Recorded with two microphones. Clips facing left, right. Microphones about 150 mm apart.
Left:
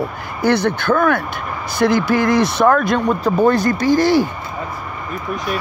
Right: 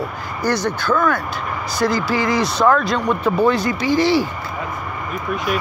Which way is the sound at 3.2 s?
40° left (ahead or behind).